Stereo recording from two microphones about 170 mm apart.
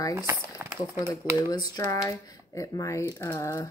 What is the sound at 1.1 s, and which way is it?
Speech, 20° left (ahead or behind).